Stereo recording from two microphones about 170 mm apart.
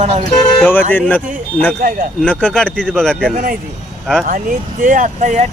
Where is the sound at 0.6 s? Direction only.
10° left (ahead or behind).